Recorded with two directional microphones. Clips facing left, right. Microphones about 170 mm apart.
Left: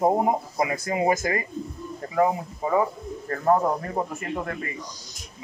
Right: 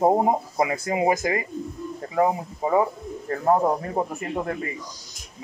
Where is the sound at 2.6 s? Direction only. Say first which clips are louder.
Right 2 dB; 15° right (ahead or behind).